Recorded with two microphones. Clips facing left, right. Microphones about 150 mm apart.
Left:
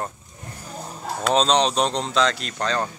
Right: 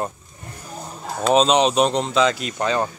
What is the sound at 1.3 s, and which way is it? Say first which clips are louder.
Speech: right 3 dB; 10° right (ahead or behind).